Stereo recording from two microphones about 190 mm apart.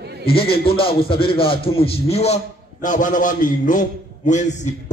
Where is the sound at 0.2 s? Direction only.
30° left (ahead or behind).